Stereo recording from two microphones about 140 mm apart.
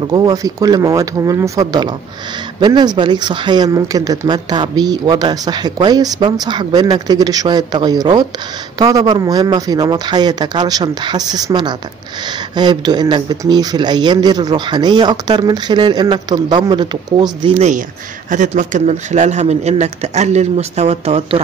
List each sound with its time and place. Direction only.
0.1 s speech: 25° right (ahead or behind)
17.6 s speech: 60° right (ahead or behind)